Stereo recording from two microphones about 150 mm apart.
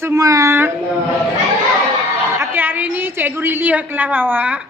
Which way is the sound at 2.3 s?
15° right (ahead or behind).